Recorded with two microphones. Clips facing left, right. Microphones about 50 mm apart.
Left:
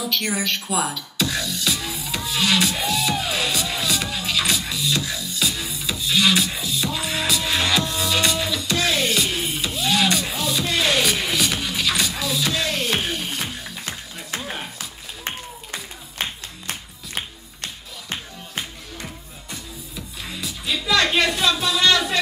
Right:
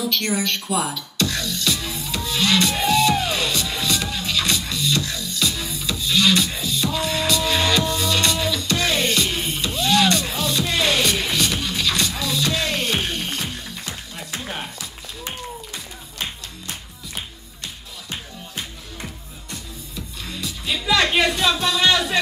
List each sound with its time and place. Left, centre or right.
0.0 s music: centre
16.6 s music: left
20.2 s music: centre
20.6 s music: centre
21.5 s a sound: centre